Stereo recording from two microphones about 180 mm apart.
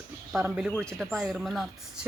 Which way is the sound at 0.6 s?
Centre (ahead or behind).